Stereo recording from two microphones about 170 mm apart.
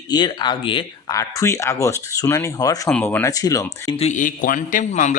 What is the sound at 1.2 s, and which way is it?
Speech, 20° left (ahead or behind).